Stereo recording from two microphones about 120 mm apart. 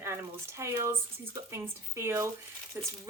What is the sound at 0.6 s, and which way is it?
Speech, 25° right (ahead or behind).